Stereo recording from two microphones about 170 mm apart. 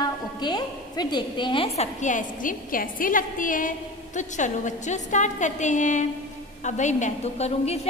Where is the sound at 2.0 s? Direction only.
50° left (ahead or behind).